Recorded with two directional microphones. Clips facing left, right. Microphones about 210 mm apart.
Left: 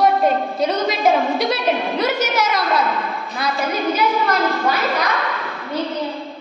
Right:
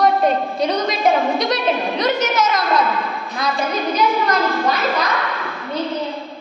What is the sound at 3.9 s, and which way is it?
A woman's voice, 10° left (ahead or behind).